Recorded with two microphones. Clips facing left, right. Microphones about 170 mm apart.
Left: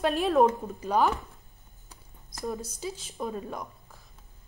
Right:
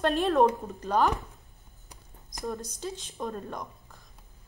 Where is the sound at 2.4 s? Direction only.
5° left (ahead or behind).